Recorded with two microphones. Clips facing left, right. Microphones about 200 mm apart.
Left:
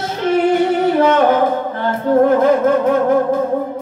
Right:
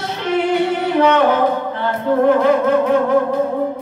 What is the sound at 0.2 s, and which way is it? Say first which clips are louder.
Music: left 3 dB; 45° left (ahead or behind).